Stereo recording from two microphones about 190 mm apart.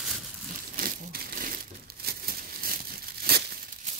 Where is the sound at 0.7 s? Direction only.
45° right (ahead or behind).